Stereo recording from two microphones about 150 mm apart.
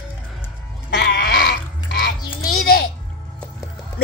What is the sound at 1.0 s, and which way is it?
Goat, 90° left.